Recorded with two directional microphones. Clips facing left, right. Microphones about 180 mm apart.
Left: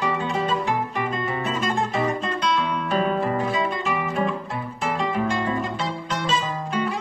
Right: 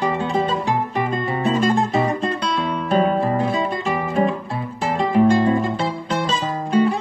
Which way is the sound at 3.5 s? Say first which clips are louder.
Right 3 dB; 35° right (ahead or behind).